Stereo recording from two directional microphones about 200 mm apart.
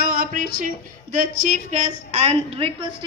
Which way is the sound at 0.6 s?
40° right (ahead or behind).